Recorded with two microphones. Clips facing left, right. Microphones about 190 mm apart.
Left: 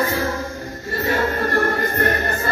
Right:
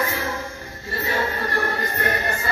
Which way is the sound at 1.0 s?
50° left (ahead or behind).